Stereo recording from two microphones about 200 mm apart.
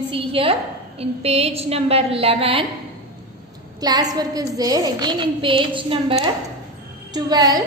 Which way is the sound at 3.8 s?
20° right (ahead or behind).